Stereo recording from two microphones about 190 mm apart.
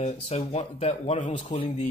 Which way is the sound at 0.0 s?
35° left (ahead or behind).